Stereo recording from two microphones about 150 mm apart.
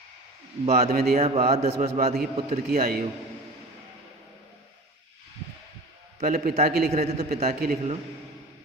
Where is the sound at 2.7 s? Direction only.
85° right.